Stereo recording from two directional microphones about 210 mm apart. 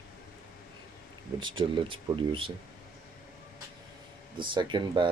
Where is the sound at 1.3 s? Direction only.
20° right (ahead or behind).